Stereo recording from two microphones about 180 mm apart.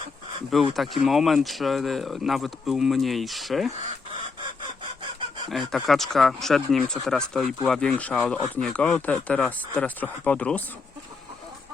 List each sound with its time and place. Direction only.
0.5 s speech: centre (ahead or behind)
5.5 s speech: centre (ahead or behind)